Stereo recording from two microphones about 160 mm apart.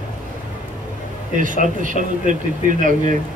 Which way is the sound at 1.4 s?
55° right (ahead or behind).